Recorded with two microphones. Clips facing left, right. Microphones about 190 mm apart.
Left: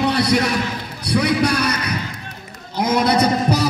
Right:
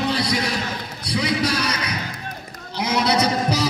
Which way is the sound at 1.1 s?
60° left (ahead or behind).